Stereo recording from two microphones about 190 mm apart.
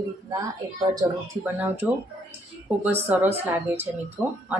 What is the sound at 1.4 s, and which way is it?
Speech, 10° right (ahead or behind).